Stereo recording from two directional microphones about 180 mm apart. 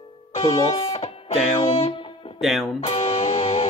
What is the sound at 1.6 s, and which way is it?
Music, 30° left (ahead or behind).